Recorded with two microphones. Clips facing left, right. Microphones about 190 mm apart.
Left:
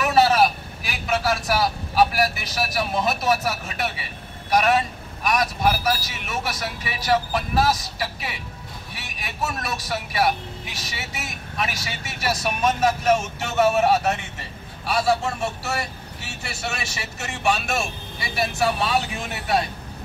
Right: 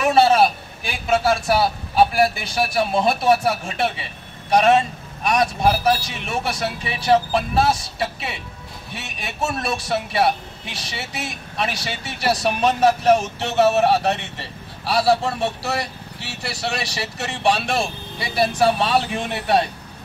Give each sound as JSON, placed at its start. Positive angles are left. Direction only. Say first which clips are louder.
{"t": 0.0, "sound": "vehicle", "louder": "right 3 dB", "side_deg": -25}
{"t": 0.8, "sound": "a man's voice", "louder": "right 5 dB", "side_deg": -30}